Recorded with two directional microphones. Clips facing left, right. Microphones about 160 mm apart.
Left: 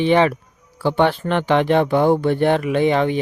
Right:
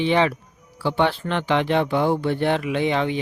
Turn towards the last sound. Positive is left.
turn(degrees=50)  # may be behind; listen again after turning